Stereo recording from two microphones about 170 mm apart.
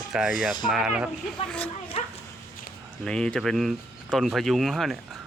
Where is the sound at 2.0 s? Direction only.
40° left (ahead or behind).